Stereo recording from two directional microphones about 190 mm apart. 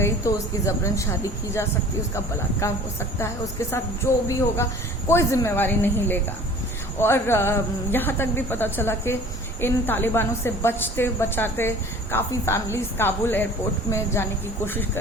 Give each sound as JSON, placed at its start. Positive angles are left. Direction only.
{"t": 0.0, "sound": "speech", "side_deg": 15}